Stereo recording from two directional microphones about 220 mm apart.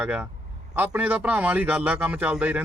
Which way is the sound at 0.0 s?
5° right (ahead or behind).